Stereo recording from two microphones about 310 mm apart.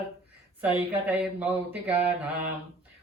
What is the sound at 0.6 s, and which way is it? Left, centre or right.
Speech, centre.